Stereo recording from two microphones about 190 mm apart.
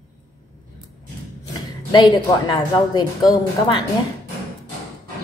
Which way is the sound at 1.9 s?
25° left (ahead or behind).